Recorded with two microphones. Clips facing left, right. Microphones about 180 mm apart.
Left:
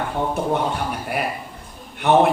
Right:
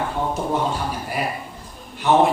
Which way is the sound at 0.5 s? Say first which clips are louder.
Left 1 dB; 60° left (ahead or behind).